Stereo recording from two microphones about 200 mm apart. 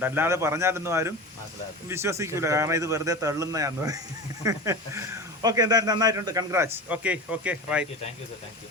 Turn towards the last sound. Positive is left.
turn(degrees=-5)  # may be behind; listen again after turning